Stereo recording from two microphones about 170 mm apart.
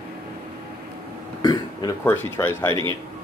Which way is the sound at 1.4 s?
25° left (ahead or behind).